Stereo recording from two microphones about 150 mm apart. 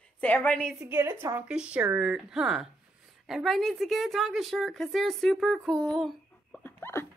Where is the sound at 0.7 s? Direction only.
15° right (ahead or behind).